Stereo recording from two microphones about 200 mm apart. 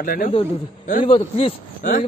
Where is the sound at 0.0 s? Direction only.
45° left (ahead or behind).